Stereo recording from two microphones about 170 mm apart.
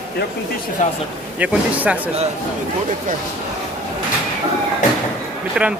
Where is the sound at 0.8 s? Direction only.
45° left (ahead or behind).